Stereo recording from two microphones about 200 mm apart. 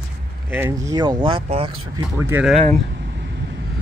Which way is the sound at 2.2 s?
10° right (ahead or behind).